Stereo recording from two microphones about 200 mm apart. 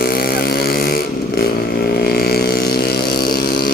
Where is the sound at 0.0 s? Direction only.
50° left (ahead or behind).